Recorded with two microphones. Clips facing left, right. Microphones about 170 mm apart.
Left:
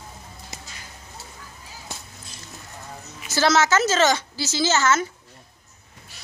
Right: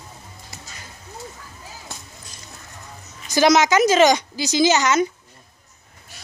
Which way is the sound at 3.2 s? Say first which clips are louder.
Right 4 dB; 15° right (ahead or behind).